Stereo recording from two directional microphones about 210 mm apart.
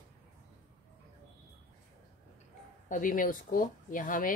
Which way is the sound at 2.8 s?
40° left (ahead or behind).